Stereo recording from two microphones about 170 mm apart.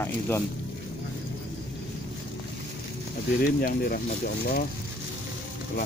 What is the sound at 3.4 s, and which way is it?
Speech, 60° left (ahead or behind).